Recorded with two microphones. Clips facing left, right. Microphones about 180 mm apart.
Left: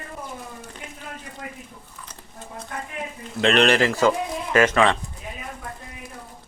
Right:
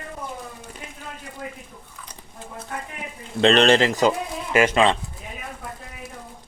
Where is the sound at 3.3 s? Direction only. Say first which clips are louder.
Right 2 dB; 30° right (ahead or behind).